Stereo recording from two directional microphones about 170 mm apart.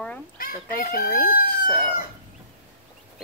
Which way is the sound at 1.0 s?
60° left (ahead or behind).